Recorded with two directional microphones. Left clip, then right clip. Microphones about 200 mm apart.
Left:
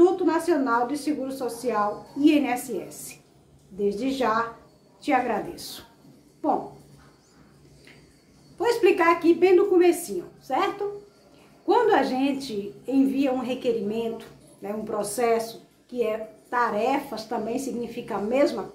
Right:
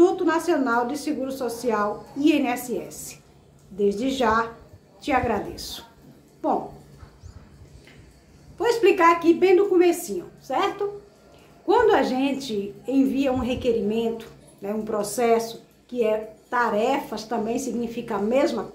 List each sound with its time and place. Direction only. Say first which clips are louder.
0.0 s a woman's voice: right 1 dB; 10° right (ahead or behind)
8.5 s a woman's voice: right 2 dB; 5° right (ahead or behind)